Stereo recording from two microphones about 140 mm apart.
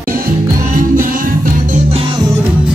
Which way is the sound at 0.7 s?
80° right.